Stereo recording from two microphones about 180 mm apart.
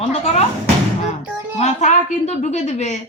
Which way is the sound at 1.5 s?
40° left (ahead or behind).